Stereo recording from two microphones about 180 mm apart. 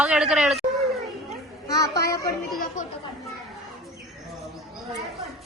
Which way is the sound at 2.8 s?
45° left (ahead or behind).